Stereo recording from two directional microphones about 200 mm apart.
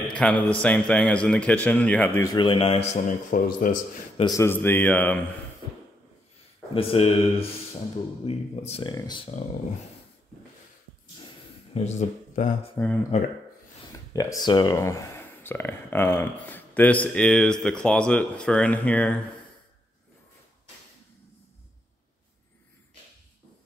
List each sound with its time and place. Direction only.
0.1 s speech: 5° left (ahead or behind)
2.3 s speech: 25° left (ahead or behind)
3.3 s speech: 45° left (ahead or behind)
4.2 s speech: 15° left (ahead or behind)
6.7 s speech: 30° left (ahead or behind)
11.7 s speech: 35° left (ahead or behind)
12.7 s speech: 10° left (ahead or behind)
14.1 s speech: 15° left (ahead or behind)